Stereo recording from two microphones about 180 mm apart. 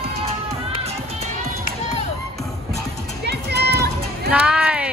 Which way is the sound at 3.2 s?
65° right (ahead or behind).